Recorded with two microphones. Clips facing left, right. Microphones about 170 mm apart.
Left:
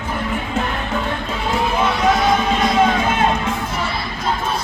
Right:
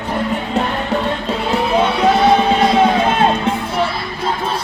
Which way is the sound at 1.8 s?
30° right (ahead or behind).